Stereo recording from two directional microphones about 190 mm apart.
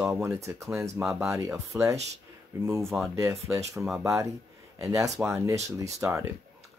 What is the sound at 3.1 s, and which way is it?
Speech, 15° right (ahead or behind).